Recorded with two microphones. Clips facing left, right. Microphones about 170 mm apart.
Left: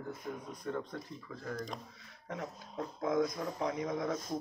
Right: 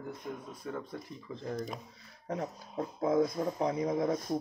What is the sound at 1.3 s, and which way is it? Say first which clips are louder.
A man's voice: right 3 dB; 25° right (ahead or behind).